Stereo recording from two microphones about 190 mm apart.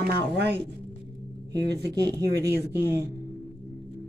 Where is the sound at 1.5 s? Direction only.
20° right (ahead or behind).